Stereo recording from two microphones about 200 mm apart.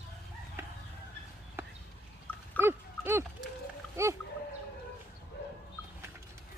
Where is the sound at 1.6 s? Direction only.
10° right (ahead or behind).